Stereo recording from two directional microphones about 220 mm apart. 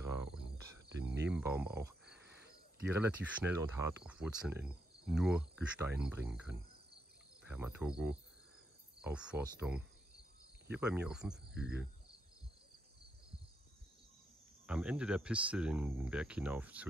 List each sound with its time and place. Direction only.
0.0 s cricket: 15° right (ahead or behind)
1.0 s cricket: 50° right (ahead or behind)
1.3 s speech: 10° right (ahead or behind)
7.4 s cricket: 5° right (ahead or behind)
9.0 s speech: 5° right (ahead or behind)
14.7 s speech: 5° right (ahead or behind)